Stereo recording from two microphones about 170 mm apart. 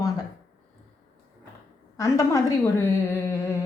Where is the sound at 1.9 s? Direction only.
20° left (ahead or behind).